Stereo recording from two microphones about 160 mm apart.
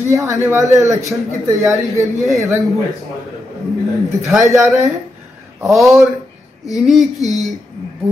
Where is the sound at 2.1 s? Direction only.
Centre (ahead or behind).